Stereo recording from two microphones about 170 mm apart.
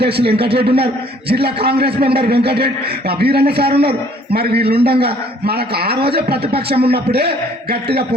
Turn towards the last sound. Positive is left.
turn(degrees=-70)  # may be behind; listen again after turning